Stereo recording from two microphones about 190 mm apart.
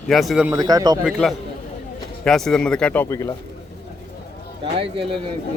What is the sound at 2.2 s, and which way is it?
Speech, 5° left (ahead or behind).